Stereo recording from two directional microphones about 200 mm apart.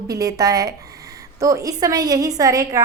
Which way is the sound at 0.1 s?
15° right (ahead or behind).